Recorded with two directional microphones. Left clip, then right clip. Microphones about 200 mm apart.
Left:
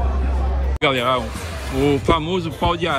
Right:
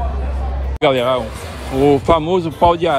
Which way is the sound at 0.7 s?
15° right (ahead or behind).